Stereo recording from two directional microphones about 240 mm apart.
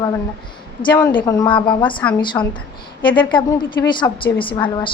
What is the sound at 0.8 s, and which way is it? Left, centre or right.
A woman's voice, centre.